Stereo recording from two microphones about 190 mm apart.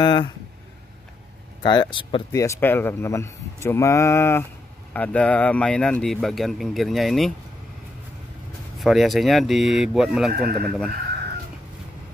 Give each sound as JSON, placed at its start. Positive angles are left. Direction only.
{"t": 0.0, "sound": "speech", "side_deg": 25}
{"t": 1.6, "sound": "speech", "side_deg": 25}
{"t": 2.4, "sound": "speech", "side_deg": 15}
{"t": 8.7, "sound": "speech", "side_deg": 0}
{"t": 10.3, "sound": "speech", "side_deg": -55}